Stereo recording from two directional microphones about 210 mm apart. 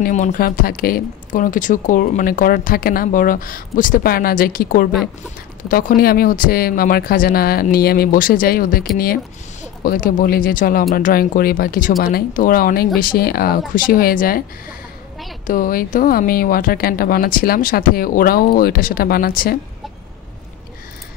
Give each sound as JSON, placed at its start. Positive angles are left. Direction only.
{"t": 0.0, "sound": "speech", "side_deg": 40}
{"t": 15.4, "sound": "speech", "side_deg": 40}